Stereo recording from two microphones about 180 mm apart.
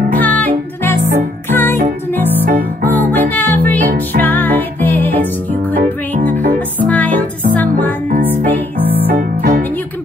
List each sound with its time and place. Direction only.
0.1 s music: 10° left (ahead or behind)
2.4 s music: 55° right (ahead or behind)
3.1 s music: 10° left (ahead or behind)
6.8 s music: 10° left (ahead or behind)
9.1 s music: 55° right (ahead or behind)